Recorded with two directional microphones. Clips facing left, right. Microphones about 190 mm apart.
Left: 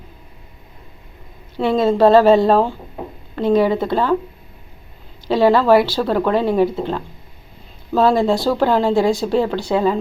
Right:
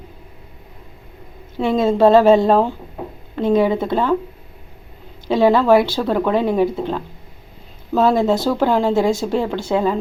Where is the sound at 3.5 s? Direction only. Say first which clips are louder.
Left 1 dB; 15° right (ahead or behind).